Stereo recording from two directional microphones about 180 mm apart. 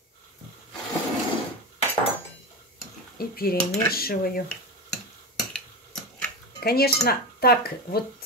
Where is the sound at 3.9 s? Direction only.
55° left (ahead or behind).